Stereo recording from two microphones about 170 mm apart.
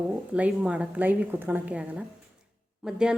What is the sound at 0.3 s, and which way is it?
A woman's voice, 10° right (ahead or behind).